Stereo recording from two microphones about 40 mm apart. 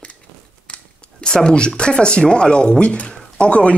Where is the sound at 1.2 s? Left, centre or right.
Centre.